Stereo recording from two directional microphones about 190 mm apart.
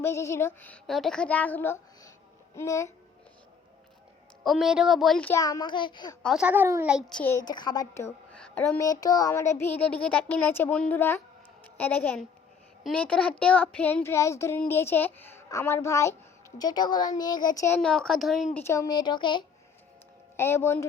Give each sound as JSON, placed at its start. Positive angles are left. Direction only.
{"t": 0.0, "sound": "speech", "side_deg": 15}
{"t": 4.4, "sound": "speech", "side_deg": -5}
{"t": 5.3, "sound": "a woman's voice", "side_deg": 20}
{"t": 6.2, "sound": "speech", "side_deg": -5}
{"t": 6.9, "sound": "speech", "side_deg": 5}
{"t": 7.4, "sound": "a woman's voice", "side_deg": 20}
{"t": 17.7, "sound": "speech", "side_deg": 5}
{"t": 18.5, "sound": "a woman's voice", "side_deg": 15}
{"t": 20.3, "sound": "speech", "side_deg": 15}